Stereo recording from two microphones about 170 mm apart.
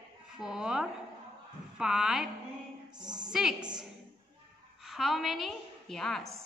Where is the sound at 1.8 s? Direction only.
5° right (ahead or behind).